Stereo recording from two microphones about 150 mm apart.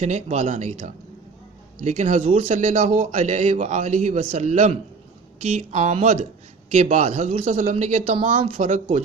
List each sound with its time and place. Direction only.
0.0 s a man's voice: 50° right (ahead or behind)
8.4 s speech: 40° right (ahead or behind)